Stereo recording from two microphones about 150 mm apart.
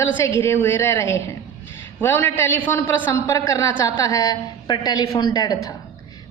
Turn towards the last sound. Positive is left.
turn(degrees=25)  # may be behind; listen again after turning